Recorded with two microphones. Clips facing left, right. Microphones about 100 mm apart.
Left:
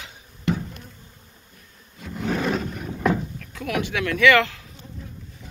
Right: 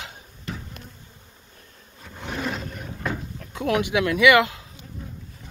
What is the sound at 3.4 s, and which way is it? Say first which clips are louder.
Speech: right 4 dB; 25° right (ahead or behind).